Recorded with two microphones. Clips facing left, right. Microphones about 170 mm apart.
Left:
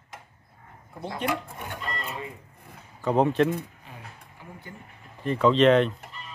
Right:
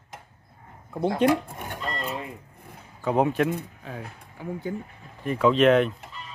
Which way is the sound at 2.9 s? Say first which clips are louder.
Left 1 dB; 5° right (ahead or behind).